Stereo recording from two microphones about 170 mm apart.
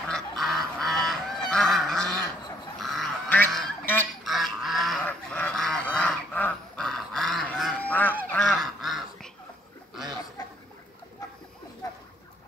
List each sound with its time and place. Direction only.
0.1 s goose: centre (ahead or behind)
2.8 s duck: centre (ahead or behind)
3.5 s honk: 5° left (ahead or behind)
4.2 s goose: centre (ahead or behind)
11.8 s a sound: 20° left (ahead or behind)